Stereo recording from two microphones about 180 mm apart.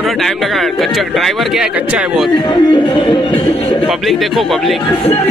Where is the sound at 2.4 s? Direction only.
25° left (ahead or behind).